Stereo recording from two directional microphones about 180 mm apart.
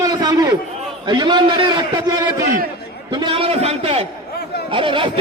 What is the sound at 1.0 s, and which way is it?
Speech, 25° right (ahead or behind).